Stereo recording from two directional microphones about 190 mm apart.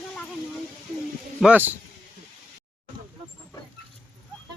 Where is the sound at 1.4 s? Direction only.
5° right (ahead or behind).